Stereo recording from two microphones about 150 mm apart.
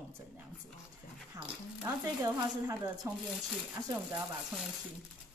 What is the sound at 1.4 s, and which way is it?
A woman's voice, 25° right (ahead or behind).